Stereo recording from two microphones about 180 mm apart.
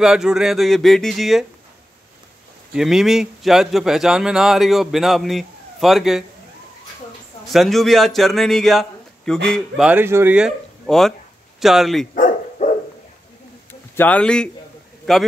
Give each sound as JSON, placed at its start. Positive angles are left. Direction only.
{"t": 0.0, "sound": "a man's voice", "side_deg": -5}
{"t": 2.7, "sound": "a man's voice", "side_deg": -5}
{"t": 7.5, "sound": "a man's voice", "side_deg": 0}
{"t": 12.2, "sound": "dog", "side_deg": 40}
{"t": 13.7, "sound": "a sound", "side_deg": 10}
{"t": 15.1, "sound": "a man's voice", "side_deg": 0}